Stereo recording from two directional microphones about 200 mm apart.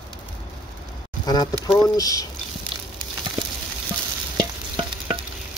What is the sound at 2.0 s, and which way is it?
Speech, 15° left (ahead or behind).